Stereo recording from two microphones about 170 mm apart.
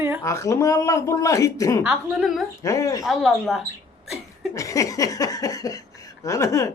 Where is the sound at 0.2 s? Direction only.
20° left (ahead or behind).